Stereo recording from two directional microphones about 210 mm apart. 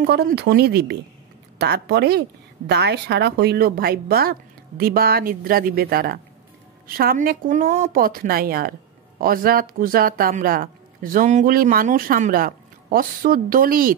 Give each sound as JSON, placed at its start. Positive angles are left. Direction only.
{"t": 0.0, "sound": "speech", "side_deg": -50}